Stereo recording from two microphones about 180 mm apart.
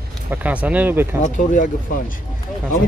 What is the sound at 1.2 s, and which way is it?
Speech, 45° left (ahead or behind).